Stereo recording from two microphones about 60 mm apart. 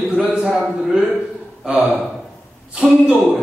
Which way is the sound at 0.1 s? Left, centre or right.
Centre.